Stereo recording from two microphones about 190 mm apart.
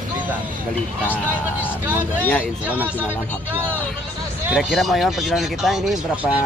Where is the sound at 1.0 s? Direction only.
10° right (ahead or behind).